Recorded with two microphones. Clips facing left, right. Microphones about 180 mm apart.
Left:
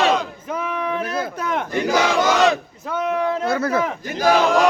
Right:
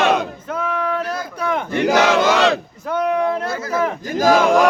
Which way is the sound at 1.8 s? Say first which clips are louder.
Right 4 dB; 65° right (ahead or behind).